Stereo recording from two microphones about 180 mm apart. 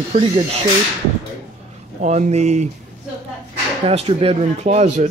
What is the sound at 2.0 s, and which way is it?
Speech, 40° right (ahead or behind).